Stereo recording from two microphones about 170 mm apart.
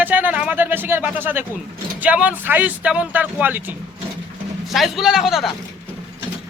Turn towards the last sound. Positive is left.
turn(degrees=0)  # may be behind; listen again after turning